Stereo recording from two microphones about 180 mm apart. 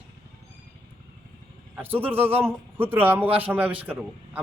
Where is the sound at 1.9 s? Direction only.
10° right (ahead or behind).